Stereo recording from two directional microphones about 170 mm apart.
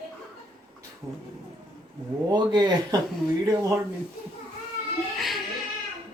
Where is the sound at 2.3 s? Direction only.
25° right (ahead or behind).